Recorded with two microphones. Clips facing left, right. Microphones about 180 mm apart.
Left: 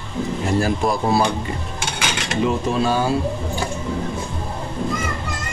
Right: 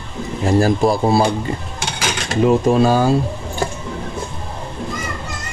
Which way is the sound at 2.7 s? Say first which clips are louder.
Right 6 dB; 40° right (ahead or behind).